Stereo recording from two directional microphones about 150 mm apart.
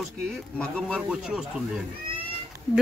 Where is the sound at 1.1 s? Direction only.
5° right (ahead or behind).